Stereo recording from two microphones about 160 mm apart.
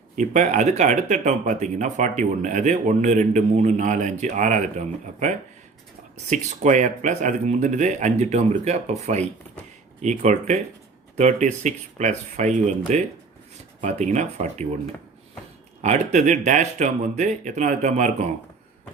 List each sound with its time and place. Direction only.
0.2 s speech: 50° right (ahead or behind)
6.3 s speech: 50° right (ahead or behind)
15.8 s speech: 45° right (ahead or behind)